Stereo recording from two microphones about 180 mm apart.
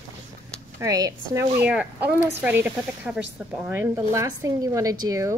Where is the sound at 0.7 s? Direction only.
20° right (ahead or behind).